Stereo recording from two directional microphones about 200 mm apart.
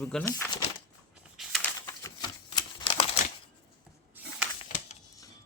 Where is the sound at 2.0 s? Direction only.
20° left (ahead or behind).